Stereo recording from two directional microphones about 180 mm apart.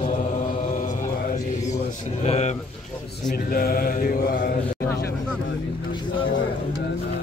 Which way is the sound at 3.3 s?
55° left (ahead or behind).